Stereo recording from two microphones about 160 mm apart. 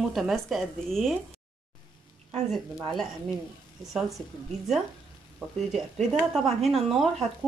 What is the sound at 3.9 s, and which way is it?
Speech, centre (ahead or behind).